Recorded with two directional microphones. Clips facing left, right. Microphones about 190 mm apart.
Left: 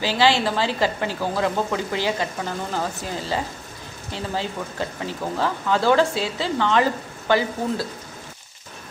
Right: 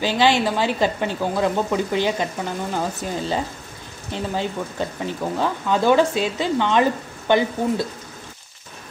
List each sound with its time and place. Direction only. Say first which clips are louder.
0.0 s speech: right 1 dB; 20° right (ahead or behind)